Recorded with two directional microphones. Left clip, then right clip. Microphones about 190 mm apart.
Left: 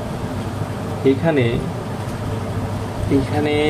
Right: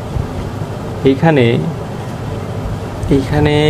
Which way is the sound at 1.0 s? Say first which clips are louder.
Right 6 dB; 55° right (ahead or behind).